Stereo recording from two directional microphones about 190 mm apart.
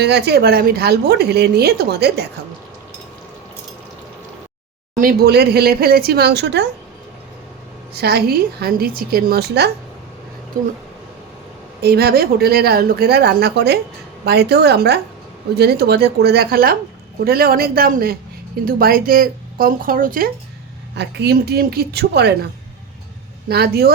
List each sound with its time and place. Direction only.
0.0 s a woman's voice: 60° right (ahead or behind)
4.9 s a woman's voice: 50° right (ahead or behind)
7.9 s a woman's voice: 55° right (ahead or behind)
11.8 s a woman's voice: 60° right (ahead or behind)
20.9 s a woman's voice: 60° right (ahead or behind)
23.5 s a woman's voice: 55° right (ahead or behind)